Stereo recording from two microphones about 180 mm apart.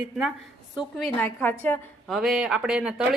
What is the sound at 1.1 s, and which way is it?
A woman's voice, 10° left (ahead or behind).